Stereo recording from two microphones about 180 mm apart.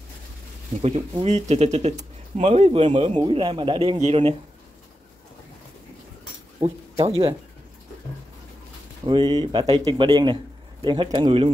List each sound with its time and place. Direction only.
0.8 s speech: 40° right (ahead or behind)
6.6 s speech: 30° right (ahead or behind)
9.0 s a man's voice: 20° right (ahead or behind)